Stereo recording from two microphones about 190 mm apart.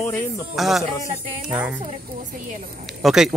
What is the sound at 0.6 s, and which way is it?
Speech, centre (ahead or behind).